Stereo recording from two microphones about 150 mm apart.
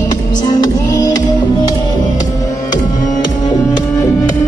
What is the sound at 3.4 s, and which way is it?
Music, 25° left (ahead or behind).